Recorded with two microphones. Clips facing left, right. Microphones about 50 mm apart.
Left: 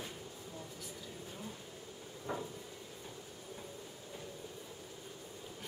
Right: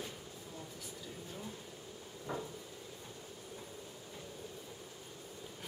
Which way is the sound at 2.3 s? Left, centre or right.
Centre.